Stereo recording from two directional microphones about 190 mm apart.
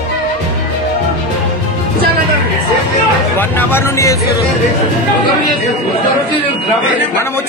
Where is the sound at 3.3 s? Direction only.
10° left (ahead or behind).